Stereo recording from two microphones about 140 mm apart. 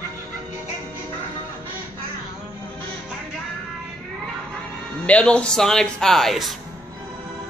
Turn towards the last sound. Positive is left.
turn(degrees=0)  # may be behind; listen again after turning